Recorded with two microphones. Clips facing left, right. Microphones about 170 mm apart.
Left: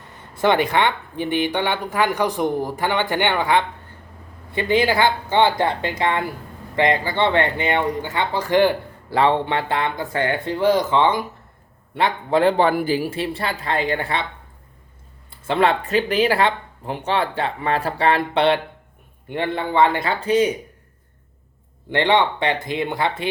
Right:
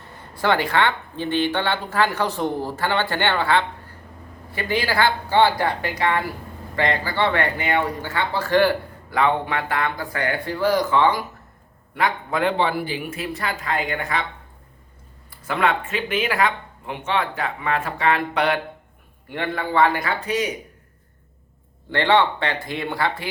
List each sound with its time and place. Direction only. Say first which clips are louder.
0.2 s speech: left 3 dB; 20° left (ahead or behind)
9.0 s speech: left 3 dB; 30° left (ahead or behind)
15.3 s speech: left 3 dB; 30° left (ahead or behind)
21.8 s speech: left 1 dB; 20° left (ahead or behind)